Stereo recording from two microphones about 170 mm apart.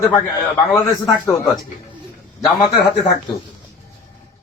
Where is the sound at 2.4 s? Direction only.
25° left (ahead or behind).